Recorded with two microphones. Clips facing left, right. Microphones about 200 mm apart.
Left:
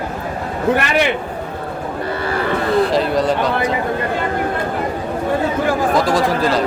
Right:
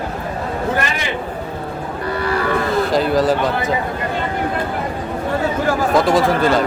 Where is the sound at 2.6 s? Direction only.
Centre (ahead or behind).